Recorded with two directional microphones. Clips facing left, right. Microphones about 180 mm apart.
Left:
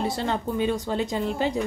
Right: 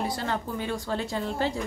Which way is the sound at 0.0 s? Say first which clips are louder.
Left 3 dB; 25° left (ahead or behind).